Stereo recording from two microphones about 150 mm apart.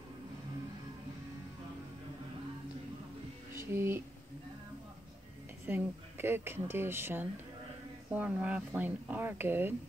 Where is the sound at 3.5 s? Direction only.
15° right (ahead or behind).